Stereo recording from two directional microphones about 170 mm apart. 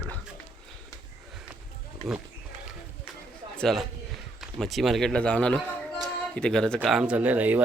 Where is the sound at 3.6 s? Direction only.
Centre (ahead or behind).